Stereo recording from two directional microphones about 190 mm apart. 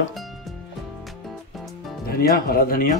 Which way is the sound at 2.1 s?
50° left (ahead or behind).